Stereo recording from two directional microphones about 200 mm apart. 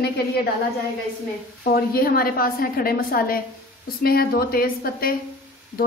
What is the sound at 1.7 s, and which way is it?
A woman's voice, 50° left (ahead or behind).